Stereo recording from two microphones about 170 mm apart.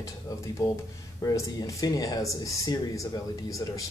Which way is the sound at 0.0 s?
20° left (ahead or behind).